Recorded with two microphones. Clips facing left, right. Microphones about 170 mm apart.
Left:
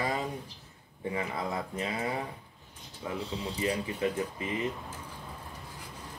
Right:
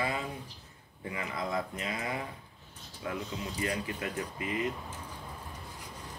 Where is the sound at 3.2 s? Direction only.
30° left (ahead or behind).